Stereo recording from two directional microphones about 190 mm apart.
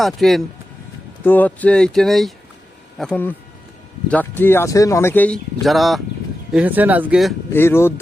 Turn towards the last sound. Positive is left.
turn(degrees=10)  # may be behind; listen again after turning